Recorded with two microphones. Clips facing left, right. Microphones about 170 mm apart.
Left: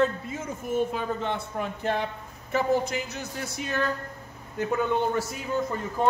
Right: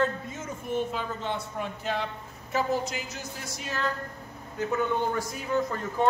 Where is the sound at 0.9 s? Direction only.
50° left (ahead or behind).